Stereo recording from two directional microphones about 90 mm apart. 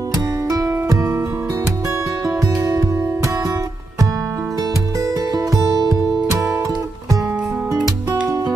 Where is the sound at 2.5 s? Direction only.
25° right (ahead or behind); by 7.2 s 40° right (ahead or behind).